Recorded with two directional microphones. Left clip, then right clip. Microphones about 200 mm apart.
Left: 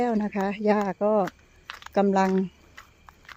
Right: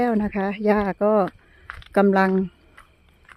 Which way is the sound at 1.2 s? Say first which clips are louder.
Right 4 dB; 10° left (ahead or behind).